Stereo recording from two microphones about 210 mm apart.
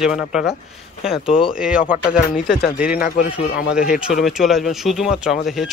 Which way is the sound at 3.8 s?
5° right (ahead or behind).